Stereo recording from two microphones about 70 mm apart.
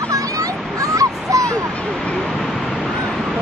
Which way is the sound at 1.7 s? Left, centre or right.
Centre.